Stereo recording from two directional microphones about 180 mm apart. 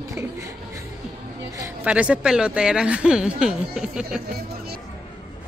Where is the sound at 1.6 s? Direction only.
10° right (ahead or behind).